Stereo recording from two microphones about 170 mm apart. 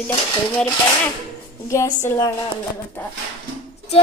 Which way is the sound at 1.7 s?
15° left (ahead or behind).